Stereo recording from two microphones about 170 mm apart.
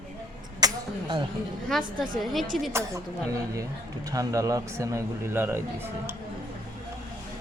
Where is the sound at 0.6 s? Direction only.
25° right (ahead or behind).